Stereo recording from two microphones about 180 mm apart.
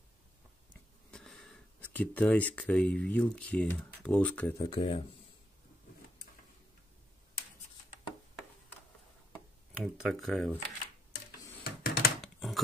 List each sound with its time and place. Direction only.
1.1 s speech: 5° left (ahead or behind)
4.7 s speech: 35° left (ahead or behind)
9.9 s speech: centre (ahead or behind)
11.6 s computer keyboard: 60° left (ahead or behind)
12.2 s computer keyboard: centre (ahead or behind)